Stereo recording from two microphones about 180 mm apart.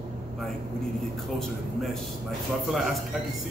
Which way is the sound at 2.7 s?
Centre (ahead or behind).